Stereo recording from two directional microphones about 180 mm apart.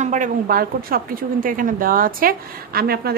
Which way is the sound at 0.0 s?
45° right (ahead or behind).